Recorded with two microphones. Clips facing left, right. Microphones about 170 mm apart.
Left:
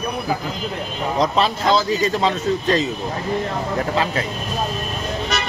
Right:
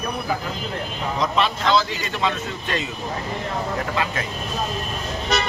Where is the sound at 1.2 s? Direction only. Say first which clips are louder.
Left 3 dB; 35° left (ahead or behind).